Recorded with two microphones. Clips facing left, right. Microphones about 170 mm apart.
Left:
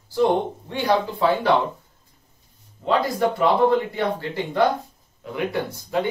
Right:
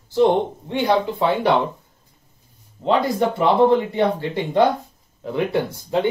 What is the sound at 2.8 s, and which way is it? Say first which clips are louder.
Speech: right 2 dB; 25° right (ahead or behind).